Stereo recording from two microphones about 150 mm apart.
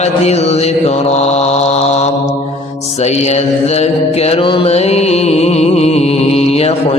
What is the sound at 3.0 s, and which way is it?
Mantra, 45° left (ahead or behind).